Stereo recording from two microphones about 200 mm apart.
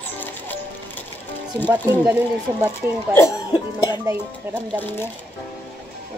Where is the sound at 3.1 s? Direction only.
15° left (ahead or behind).